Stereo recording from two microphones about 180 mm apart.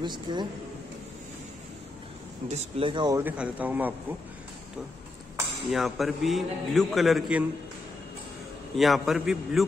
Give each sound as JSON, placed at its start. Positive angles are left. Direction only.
{"t": 0.0, "sound": "speech", "side_deg": -25}
{"t": 2.4, "sound": "speech", "side_deg": -40}
{"t": 2.9, "sound": "speech", "side_deg": -25}
{"t": 3.2, "sound": "speech", "side_deg": -10}
{"t": 5.7, "sound": "a man's voice", "side_deg": 0}
{"t": 8.7, "sound": "a man's voice", "side_deg": 0}